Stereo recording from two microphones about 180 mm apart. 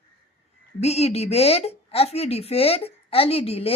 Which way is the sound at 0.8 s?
35° left (ahead or behind).